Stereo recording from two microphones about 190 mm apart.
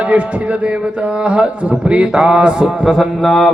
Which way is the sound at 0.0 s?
5° right (ahead or behind).